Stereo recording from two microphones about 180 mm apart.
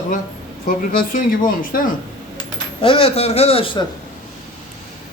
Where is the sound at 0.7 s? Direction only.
50° left (ahead or behind).